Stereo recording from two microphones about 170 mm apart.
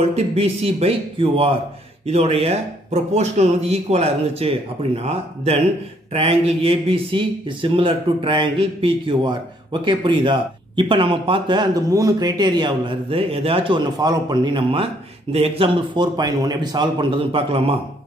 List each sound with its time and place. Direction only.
0.1 s speech: 35° right (ahead or behind)